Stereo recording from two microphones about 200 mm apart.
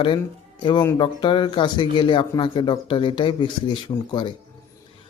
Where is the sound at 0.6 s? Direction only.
25° left (ahead or behind).